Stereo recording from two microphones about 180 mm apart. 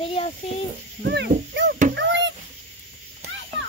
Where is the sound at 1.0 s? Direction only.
65° right (ahead or behind).